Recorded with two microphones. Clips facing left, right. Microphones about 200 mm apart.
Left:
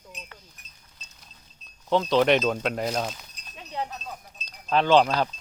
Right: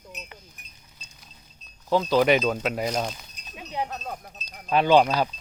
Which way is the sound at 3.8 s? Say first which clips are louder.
Right 4 dB; 50° right (ahead or behind).